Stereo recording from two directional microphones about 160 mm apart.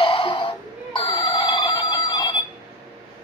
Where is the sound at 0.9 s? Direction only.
30° left (ahead or behind).